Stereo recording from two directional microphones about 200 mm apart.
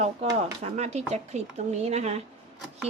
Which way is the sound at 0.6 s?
35° right (ahead or behind).